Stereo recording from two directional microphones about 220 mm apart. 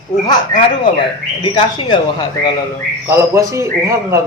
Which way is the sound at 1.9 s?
20° left (ahead or behind).